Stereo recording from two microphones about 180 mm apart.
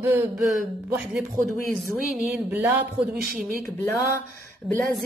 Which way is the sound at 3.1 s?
50° right (ahead or behind).